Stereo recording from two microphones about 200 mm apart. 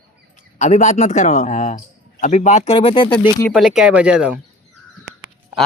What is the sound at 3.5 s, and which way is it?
Speech, centre (ahead or behind).